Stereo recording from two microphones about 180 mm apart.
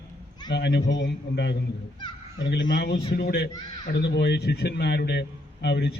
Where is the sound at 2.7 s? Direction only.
65° left (ahead or behind).